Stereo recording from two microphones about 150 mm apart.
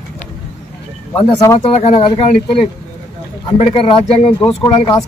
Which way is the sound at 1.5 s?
45° left (ahead or behind).